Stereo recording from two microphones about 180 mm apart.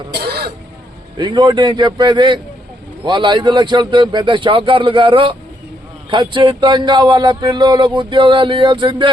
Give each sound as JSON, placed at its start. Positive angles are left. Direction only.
{"t": 0.1, "sound": "throat clearing", "side_deg": -65}
{"t": 1.2, "sound": "speech", "side_deg": -25}